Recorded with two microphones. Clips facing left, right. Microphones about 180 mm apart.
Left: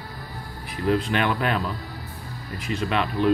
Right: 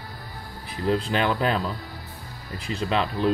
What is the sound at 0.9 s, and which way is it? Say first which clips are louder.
Speech: left 1 dB; 30° right (ahead or behind).